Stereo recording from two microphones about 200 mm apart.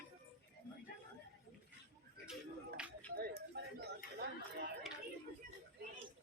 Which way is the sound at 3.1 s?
50° right (ahead or behind).